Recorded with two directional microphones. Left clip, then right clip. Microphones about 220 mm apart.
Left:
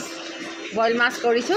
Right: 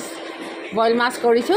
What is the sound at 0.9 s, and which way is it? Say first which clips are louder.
Speech: right 2 dB; 90° right.